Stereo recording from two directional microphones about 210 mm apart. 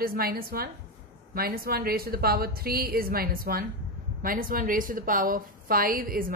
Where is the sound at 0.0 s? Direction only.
45° right (ahead or behind).